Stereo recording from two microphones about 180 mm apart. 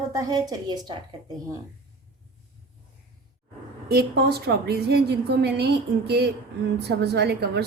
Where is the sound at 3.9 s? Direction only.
60° right (ahead or behind).